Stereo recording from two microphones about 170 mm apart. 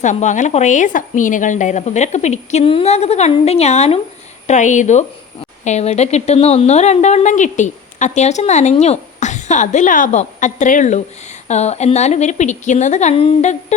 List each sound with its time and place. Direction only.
0.0 s a woman's voice: 45° left (ahead or behind)